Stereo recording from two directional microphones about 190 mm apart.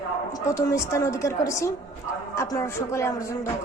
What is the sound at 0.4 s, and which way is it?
A man's voice, 15° left (ahead or behind).